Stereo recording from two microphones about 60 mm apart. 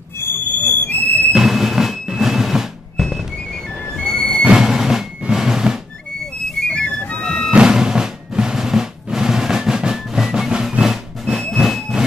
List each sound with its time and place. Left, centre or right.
0.2 s smoke detector: left
1.3 s a sound: centre
3.0 s music: centre
4.5 s a sound: centre
6.7 s music: centre
7.5 s music: centre